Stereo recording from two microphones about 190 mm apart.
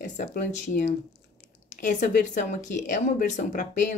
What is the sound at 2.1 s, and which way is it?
Speech, 40° left (ahead or behind).